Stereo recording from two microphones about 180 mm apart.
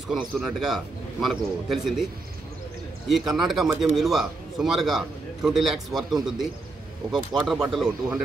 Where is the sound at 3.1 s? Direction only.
Centre (ahead or behind).